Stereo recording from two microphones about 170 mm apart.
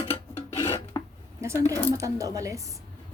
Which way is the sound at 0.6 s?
15° left (ahead or behind).